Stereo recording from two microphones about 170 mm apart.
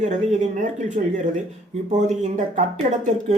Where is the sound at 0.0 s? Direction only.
45° right (ahead or behind).